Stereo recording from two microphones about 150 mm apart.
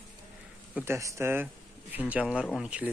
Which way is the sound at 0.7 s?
15° right (ahead or behind).